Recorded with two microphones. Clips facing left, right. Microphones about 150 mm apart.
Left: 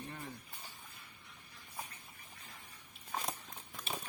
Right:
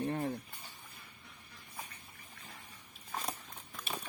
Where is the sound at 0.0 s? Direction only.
60° right (ahead or behind).